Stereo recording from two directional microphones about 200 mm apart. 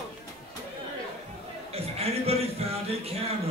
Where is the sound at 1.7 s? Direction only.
30° right (ahead or behind).